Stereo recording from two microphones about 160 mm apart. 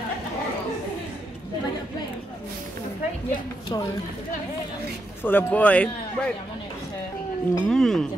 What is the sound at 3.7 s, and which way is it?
Speech, 20° left (ahead or behind).